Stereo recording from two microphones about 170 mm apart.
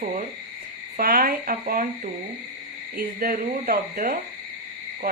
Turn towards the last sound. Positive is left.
turn(degrees=-55)  # may be behind; listen again after turning